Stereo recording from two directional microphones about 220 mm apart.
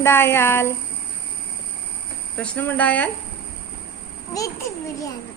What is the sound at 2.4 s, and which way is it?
Speech, 5° left (ahead or behind).